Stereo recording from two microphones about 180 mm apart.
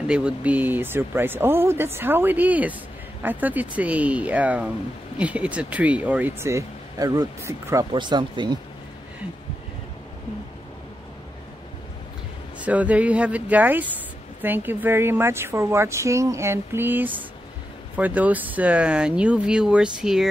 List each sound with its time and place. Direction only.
0.0 s a woman's voice: 5° right (ahead or behind); by 8.5 s 25° right (ahead or behind)
12.5 s a woman's voice: 10° right (ahead or behind)